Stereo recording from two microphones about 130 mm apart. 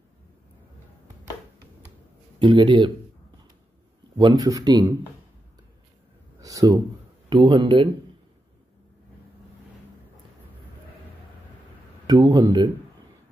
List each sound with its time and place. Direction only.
2.3 s speech: 35° right (ahead or behind)
4.2 s speech: 30° right (ahead or behind)
6.4 s speech: 25° right (ahead or behind)
12.2 s speech: 35° right (ahead or behind)